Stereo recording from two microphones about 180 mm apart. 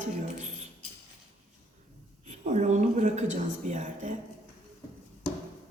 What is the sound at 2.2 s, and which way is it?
Speech, 40° right (ahead or behind).